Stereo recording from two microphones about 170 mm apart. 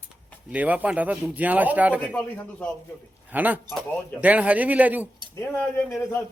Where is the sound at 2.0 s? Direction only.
10° left (ahead or behind).